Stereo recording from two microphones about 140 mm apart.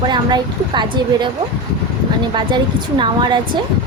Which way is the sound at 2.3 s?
35° right (ahead or behind).